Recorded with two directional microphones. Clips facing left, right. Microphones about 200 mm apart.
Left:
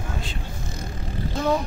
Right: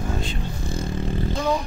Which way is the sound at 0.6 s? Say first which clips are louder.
Right 6 dB; 30° right (ahead or behind).